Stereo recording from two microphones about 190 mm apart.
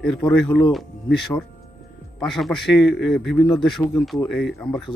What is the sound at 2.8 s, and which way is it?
Speech, 65° left (ahead or behind).